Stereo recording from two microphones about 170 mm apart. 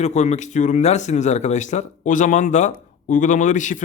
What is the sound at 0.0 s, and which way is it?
Speech, 40° left (ahead or behind).